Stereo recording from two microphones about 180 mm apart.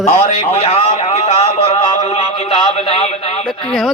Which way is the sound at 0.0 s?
40° left (ahead or behind).